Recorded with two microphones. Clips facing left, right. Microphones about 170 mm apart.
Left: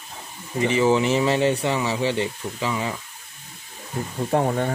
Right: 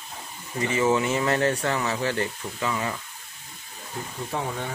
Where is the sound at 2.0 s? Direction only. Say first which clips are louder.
Left 3 dB; 20° left (ahead or behind).